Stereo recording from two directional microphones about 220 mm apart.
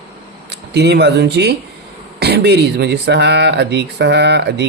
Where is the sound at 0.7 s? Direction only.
50° right (ahead or behind).